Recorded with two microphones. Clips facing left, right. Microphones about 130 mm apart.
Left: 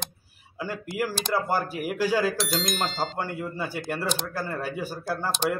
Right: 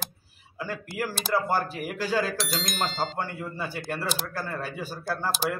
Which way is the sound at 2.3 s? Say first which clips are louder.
Left 3 dB; centre (ahead or behind).